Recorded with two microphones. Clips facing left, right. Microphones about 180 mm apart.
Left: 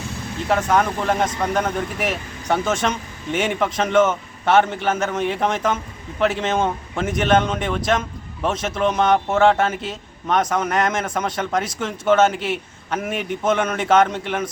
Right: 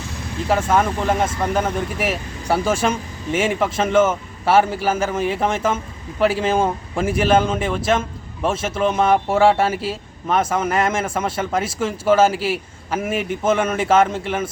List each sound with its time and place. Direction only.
0.4 s a man's voice: 5° right (ahead or behind)